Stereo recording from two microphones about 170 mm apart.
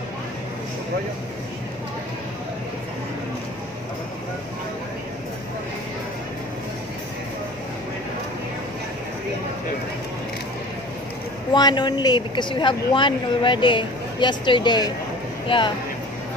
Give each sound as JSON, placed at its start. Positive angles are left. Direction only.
{"t": 11.5, "sound": "speech", "side_deg": 25}